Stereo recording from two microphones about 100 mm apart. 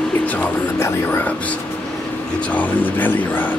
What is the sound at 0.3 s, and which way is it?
Music, 15° left (ahead or behind).